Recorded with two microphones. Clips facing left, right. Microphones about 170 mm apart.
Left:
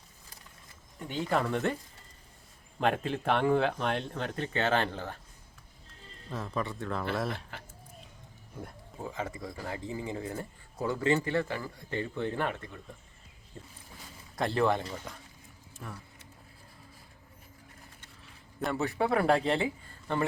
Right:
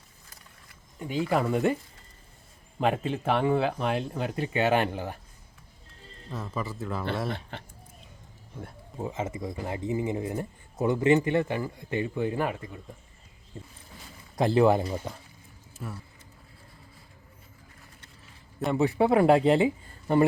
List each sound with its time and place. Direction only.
0.9 s speech: 5° right (ahead or behind)
2.8 s speech: centre (ahead or behind)
6.3 s speech: centre (ahead or behind)
9.0 s speech: 20° right (ahead or behind)
14.3 s speech: 5° right (ahead or behind)
15.8 s speech: 5° right (ahead or behind)
18.7 s speech: 20° right (ahead or behind)